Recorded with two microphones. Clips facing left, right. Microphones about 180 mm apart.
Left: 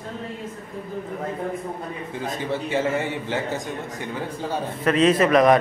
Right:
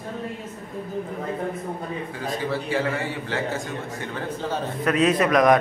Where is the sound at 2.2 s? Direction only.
20° left (ahead or behind).